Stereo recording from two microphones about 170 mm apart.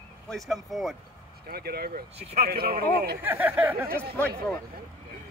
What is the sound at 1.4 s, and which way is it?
Speech, 65° right (ahead or behind).